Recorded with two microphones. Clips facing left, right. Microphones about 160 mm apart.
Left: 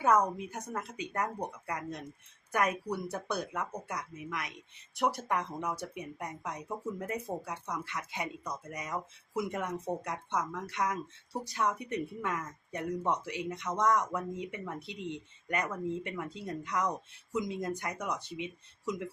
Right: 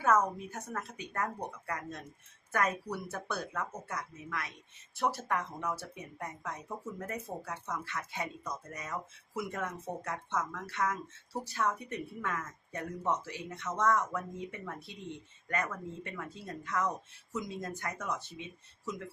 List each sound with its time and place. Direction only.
0.0 s speech: 15° left (ahead or behind)